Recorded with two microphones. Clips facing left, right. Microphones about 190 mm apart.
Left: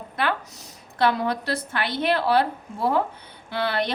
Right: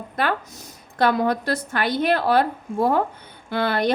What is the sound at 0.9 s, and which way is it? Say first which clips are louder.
A woman's voice: right 3 dB; 45° right (ahead or behind).